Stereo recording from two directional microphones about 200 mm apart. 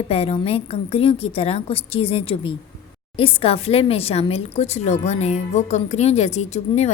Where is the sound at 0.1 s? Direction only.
30° left (ahead or behind).